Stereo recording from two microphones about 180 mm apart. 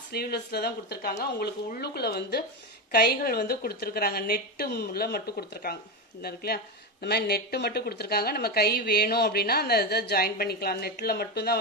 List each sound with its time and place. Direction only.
0.1 s speech: 60° left (ahead or behind)